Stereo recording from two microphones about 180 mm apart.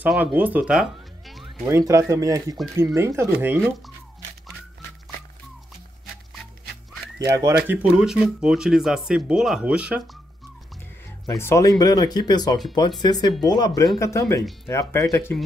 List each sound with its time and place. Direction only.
0.0 s speech: 5° right (ahead or behind)
1.7 s speech: 15° right (ahead or behind)
7.2 s speech: 20° right (ahead or behind)
11.2 s speech: 15° left (ahead or behind)